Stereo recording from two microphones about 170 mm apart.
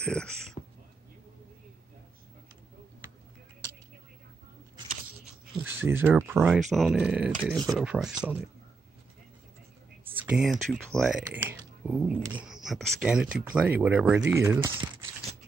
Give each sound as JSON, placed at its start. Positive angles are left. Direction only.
{"t": 0.0, "sound": "speech", "side_deg": 5}
{"t": 0.6, "sound": "a sound", "side_deg": 35}
{"t": 5.6, "sound": "speech", "side_deg": -10}
{"t": 6.7, "sound": "speech", "side_deg": 0}
{"t": 10.1, "sound": "speech", "side_deg": -5}